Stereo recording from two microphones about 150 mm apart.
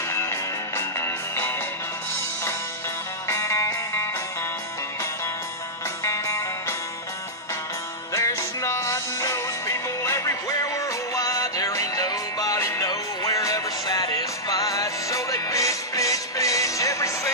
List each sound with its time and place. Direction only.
0.1 s music: 20° left (ahead or behind)
3.3 s music: 20° left (ahead or behind)
6.0 s music: 20° left (ahead or behind)
8.1 s music: 20° left (ahead or behind)